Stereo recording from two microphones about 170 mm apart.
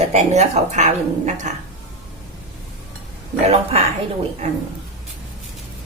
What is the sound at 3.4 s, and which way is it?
Speech, 40° right (ahead or behind).